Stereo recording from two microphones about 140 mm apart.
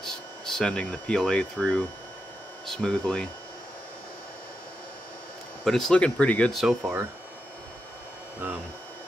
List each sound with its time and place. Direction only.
0.0 s speech: 5° left (ahead or behind)
5.7 s speech: 5° left (ahead or behind)